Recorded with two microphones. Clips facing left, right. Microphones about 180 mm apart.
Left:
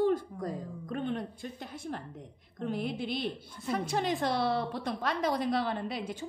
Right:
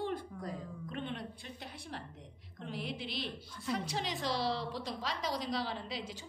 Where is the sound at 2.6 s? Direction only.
50° left (ahead or behind).